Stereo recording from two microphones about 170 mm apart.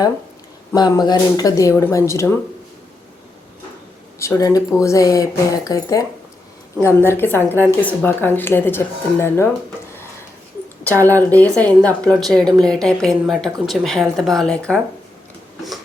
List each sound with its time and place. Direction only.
0.7 s speech: 25° left (ahead or behind)
4.2 s speech: 20° left (ahead or behind)
11.2 s speech: 10° left (ahead or behind)